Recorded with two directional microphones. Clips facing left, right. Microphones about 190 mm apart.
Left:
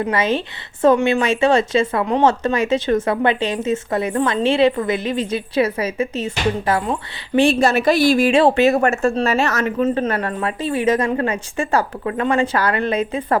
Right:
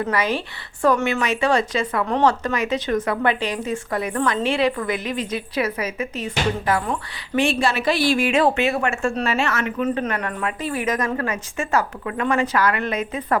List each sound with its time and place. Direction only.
0.0 s speech: 25° left (ahead or behind)
7.4 s a woman's voice: 45° left (ahead or behind)